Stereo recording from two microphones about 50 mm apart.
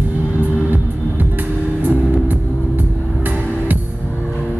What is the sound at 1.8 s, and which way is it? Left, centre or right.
Vehicle, right.